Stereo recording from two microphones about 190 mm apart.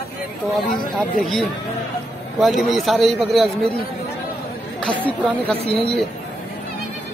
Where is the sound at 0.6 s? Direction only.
50° left (ahead or behind).